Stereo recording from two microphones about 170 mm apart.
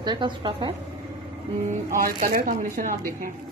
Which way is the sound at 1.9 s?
55° right (ahead or behind).